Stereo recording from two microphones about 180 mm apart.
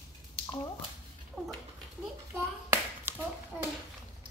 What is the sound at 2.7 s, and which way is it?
Clapping, 10° right (ahead or behind).